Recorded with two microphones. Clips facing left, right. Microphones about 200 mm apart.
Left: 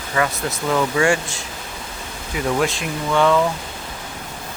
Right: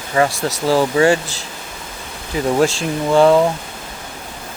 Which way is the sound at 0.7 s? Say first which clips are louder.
Right 4 dB; 30° right (ahead or behind).